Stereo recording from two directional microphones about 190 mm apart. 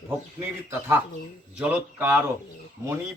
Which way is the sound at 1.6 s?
10° right (ahead or behind).